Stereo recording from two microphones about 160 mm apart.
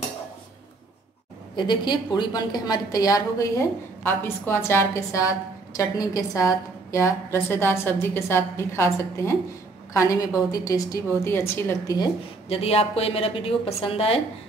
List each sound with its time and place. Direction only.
1.5 s a woman's voice: 30° left (ahead or behind)
12.4 s a woman's voice: 40° left (ahead or behind)